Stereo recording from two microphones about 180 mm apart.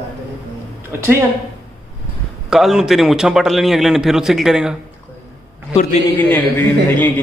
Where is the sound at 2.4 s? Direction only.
Centre (ahead or behind).